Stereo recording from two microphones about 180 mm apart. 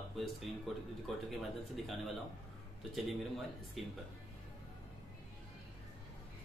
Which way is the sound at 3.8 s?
Centre (ahead or behind).